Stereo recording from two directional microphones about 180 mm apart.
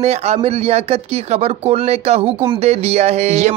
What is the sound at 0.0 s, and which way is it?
Speech, 35° right (ahead or behind).